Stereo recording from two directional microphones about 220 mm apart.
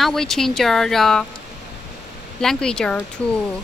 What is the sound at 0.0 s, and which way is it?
Speech, centre (ahead or behind).